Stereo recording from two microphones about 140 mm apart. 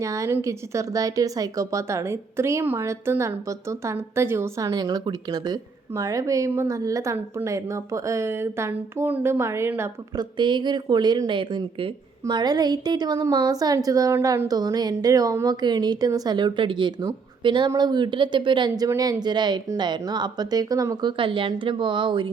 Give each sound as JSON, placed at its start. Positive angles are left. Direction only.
{"t": 0.0, "sound": "speech", "side_deg": -25}
{"t": 10.2, "sound": "speech", "side_deg": -35}